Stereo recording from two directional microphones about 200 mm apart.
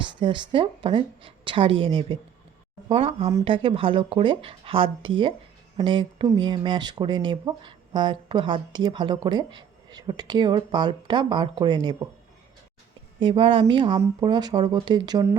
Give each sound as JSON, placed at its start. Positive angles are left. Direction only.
{"t": 0.0, "sound": "speech", "side_deg": -25}
{"t": 13.1, "sound": "speech", "side_deg": -25}